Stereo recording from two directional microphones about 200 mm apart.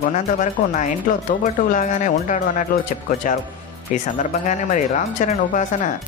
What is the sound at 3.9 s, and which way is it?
Speech, 35° left (ahead or behind).